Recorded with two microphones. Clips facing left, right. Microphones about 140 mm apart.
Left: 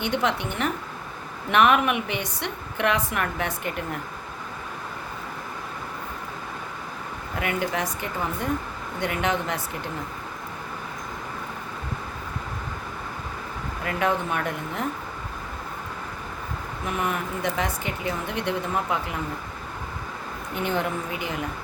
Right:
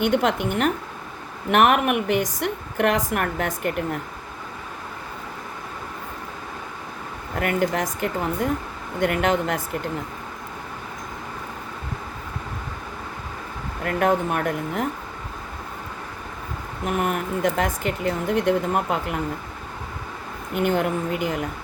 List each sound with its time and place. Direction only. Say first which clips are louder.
0.0 s a woman's voice: right 5 dB; 50° right (ahead or behind)
7.3 s a woman's voice: right 4 dB; 50° right (ahead or behind)
13.8 s a woman's voice: right 4 dB; 50° right (ahead or behind)
16.8 s speech: right 4 dB; 55° right (ahead or behind)
20.6 s a woman's voice: right 5 dB; 55° right (ahead or behind)